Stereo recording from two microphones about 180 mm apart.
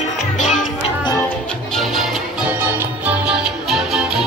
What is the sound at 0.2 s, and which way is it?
Music, 45° left (ahead or behind).